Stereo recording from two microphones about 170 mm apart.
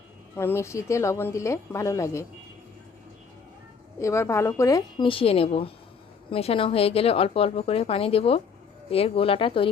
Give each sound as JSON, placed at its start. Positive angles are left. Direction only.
{"t": 0.3, "sound": "speech", "side_deg": 15}
{"t": 4.0, "sound": "speech", "side_deg": 15}